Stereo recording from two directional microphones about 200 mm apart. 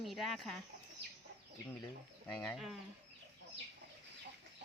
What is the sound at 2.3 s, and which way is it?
Speech, 5° left (ahead or behind).